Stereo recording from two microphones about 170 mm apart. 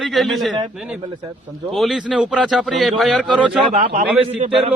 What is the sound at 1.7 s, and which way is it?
A man's voice, centre (ahead or behind).